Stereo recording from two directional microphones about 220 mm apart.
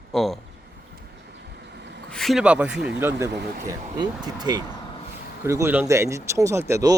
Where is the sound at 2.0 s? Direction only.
Centre (ahead or behind).